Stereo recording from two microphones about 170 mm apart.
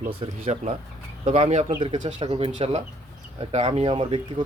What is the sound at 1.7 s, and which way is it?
Speech, 25° right (ahead or behind).